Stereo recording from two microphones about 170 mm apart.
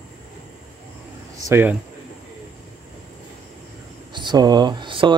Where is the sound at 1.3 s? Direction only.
15° right (ahead or behind).